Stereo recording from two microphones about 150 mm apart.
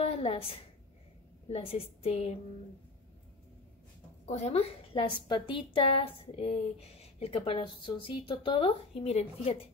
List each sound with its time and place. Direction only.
0.0 s a woman's voice: 40° left (ahead or behind)
4.3 s a woman's voice: 45° left (ahead or behind)